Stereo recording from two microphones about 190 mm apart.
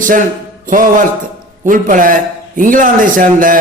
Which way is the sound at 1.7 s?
45° right (ahead or behind).